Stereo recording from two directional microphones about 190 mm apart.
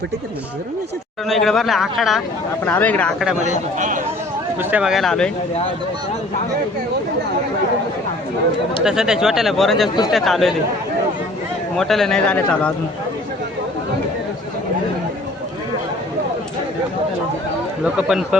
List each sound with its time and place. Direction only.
1.3 s speech: centre (ahead or behind)
3.4 s a man's voice: 40° right (ahead or behind)
4.7 s speech: 5° right (ahead or behind)
8.8 s speech: 5° right (ahead or behind)
11.8 s speech: centre (ahead or behind)
17.9 s speech: 5° right (ahead or behind)